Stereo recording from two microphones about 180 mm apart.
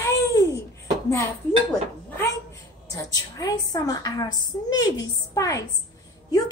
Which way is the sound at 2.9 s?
20° left (ahead or behind).